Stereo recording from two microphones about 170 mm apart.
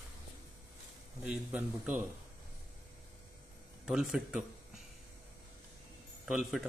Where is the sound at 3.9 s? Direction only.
5° right (ahead or behind).